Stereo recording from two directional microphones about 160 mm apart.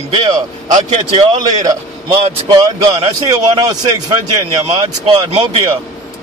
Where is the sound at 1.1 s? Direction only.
30° right (ahead or behind).